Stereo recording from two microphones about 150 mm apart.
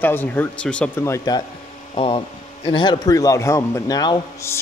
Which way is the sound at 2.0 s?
35° left (ahead or behind).